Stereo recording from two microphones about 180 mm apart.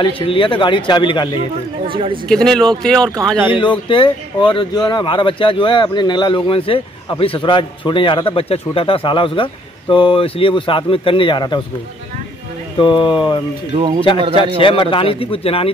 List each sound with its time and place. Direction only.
0.0 s speech: 30° left (ahead or behind)
1.9 s speech: 30° right (ahead or behind)
2.2 s speech: 5° left (ahead or behind)
3.4 s speech: 30° left (ahead or behind)
12.7 s speech: 25° left (ahead or behind)
13.7 s speech: 30° right (ahead or behind)
14.6 s speech: 30° left (ahead or behind)